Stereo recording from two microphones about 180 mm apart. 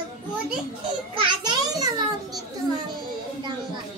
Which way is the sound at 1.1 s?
25° right (ahead or behind).